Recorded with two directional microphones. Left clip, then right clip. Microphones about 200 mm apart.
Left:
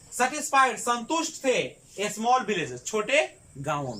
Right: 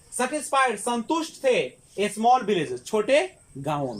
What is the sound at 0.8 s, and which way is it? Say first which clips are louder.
A man's voice: even; 20° right (ahead or behind).